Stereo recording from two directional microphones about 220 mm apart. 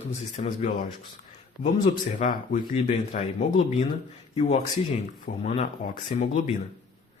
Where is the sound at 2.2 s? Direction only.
35° left (ahead or behind).